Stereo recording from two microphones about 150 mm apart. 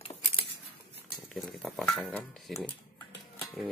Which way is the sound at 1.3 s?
Centre (ahead or behind).